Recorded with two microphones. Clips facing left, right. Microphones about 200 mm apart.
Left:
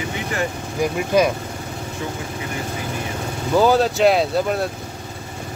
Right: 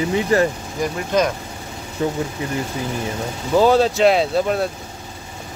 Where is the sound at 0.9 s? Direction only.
10° left (ahead or behind).